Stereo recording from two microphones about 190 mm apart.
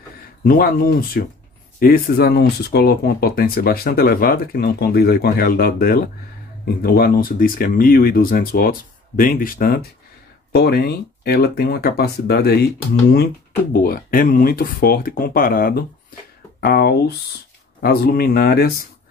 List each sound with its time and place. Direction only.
0.5 s speech: 55° left (ahead or behind)
13.8 s speech: 50° left (ahead or behind)